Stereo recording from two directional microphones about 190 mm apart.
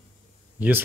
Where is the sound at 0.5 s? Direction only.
10° right (ahead or behind).